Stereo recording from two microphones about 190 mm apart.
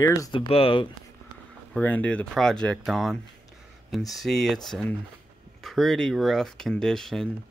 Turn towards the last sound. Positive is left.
turn(degrees=0)  # may be behind; listen again after turning